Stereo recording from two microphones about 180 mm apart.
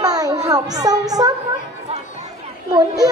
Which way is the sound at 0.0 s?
20° right (ahead or behind).